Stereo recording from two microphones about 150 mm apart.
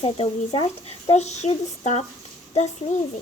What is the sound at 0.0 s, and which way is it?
Speech, 35° left (ahead or behind).